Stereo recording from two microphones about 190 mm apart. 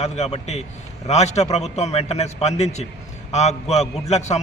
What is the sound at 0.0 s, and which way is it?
A man's voice, 35° left (ahead or behind).